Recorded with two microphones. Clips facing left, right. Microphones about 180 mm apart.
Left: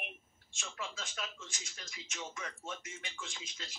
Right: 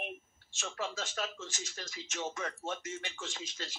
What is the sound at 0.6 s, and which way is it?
A man's voice, 45° right (ahead or behind).